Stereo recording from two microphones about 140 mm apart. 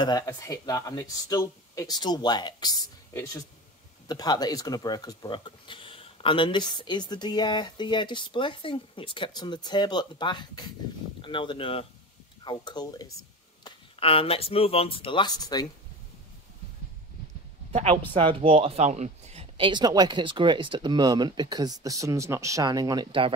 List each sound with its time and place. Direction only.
0.5 s speech: 25° left (ahead or behind)
13.7 s speech: 40° left (ahead or behind)
17.7 s speech: 45° right (ahead or behind)
19.5 s speech: 35° right (ahead or behind)